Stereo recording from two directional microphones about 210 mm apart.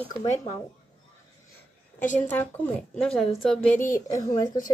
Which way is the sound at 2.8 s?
5° left (ahead or behind).